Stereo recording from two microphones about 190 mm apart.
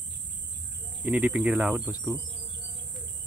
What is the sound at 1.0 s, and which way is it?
Speech, 10° right (ahead or behind).